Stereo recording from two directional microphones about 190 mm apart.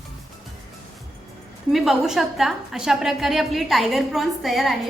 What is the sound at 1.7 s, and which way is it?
A woman's voice, centre (ahead or behind).